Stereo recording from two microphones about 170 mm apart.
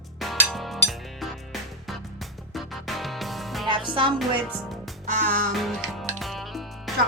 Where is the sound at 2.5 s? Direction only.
Centre (ahead or behind).